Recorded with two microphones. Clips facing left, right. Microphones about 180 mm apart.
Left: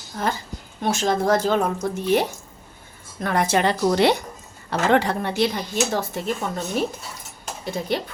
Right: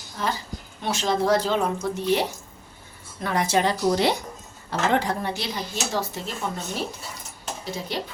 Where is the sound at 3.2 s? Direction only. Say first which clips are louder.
Left 2 dB; 55° left (ahead or behind).